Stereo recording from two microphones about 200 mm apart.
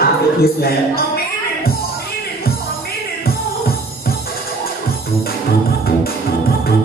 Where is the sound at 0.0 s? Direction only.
50° left (ahead or behind).